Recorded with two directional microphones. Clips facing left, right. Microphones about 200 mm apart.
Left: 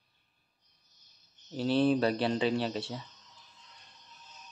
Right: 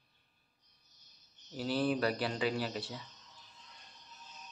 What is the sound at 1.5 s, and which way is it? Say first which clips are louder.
A man's voice: left 6 dB; 25° left (ahead or behind).